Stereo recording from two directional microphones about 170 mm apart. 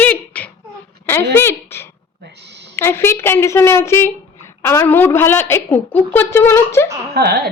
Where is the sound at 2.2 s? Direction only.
85° right.